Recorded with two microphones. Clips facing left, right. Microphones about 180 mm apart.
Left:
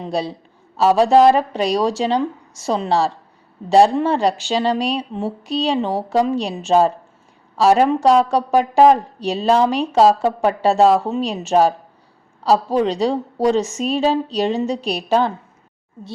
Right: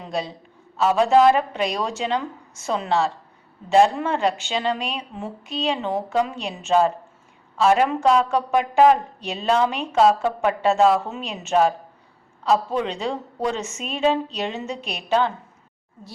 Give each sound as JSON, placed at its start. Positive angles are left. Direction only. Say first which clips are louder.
{"t": 0.0, "sound": "a woman's voice", "louder": "left 5 dB", "side_deg": 35}